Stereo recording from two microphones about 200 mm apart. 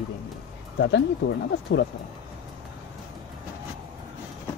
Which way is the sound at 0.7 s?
65° left (ahead or behind).